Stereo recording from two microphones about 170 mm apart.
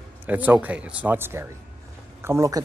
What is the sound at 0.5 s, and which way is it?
Speech, 10° right (ahead or behind).